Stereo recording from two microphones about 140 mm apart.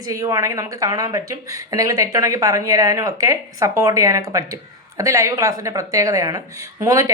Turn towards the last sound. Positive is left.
turn(degrees=-25)  # may be behind; listen again after turning